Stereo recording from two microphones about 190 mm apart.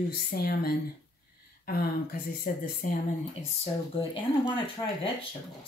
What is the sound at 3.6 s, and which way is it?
Speech, 30° left (ahead or behind).